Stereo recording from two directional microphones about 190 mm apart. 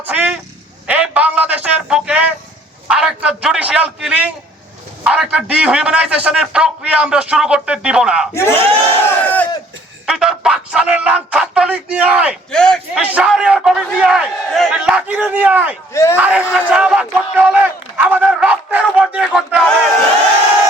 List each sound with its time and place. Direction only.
0.0 s a sound: 5° right (ahead or behind)
5.0 s a man's voice: 5° right (ahead or behind)
8.3 s battle cry: 15° left (ahead or behind)
9.0 s crowd: 10° left (ahead or behind)
10.1 s a man's voice: 5° right (ahead or behind)
15.9 s battle cry: 15° left (ahead or behind)
16.1 s crowd: 5° right (ahead or behind)